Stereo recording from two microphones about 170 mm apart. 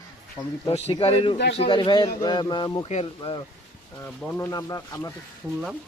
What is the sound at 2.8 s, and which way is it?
Speech, 40° left (ahead or behind).